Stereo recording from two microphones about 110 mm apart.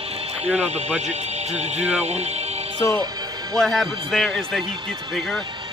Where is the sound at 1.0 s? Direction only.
90° right.